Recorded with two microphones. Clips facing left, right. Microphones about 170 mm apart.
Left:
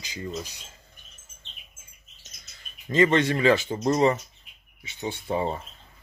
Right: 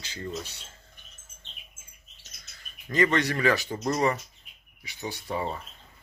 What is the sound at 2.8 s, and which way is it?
Speech, 25° left (ahead or behind).